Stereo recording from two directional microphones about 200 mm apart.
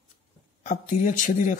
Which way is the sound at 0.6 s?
40° left (ahead or behind).